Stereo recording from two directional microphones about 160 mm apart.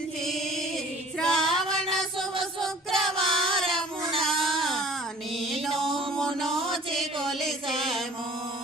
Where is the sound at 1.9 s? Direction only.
Centre (ahead or behind).